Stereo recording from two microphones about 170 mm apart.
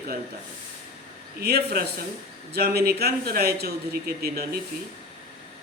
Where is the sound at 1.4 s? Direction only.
65° right (ahead or behind).